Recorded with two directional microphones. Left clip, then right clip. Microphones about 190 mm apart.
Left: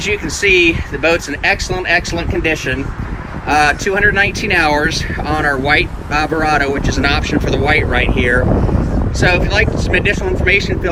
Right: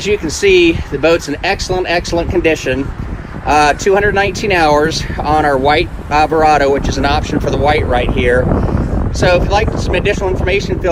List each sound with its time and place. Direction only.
0.0 s speech: 20° right (ahead or behind)